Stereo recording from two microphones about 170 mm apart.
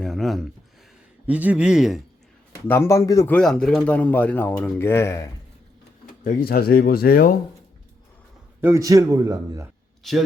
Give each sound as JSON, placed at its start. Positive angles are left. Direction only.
{"t": 0.0, "sound": "a man's voice", "side_deg": 0}
{"t": 2.6, "sound": "speech", "side_deg": 15}
{"t": 3.3, "sound": "speech", "side_deg": 5}
{"t": 6.2, "sound": "speech", "side_deg": 55}
{"t": 8.6, "sound": "a man's voice", "side_deg": -20}
{"t": 10.0, "sound": "a man's voice", "side_deg": 0}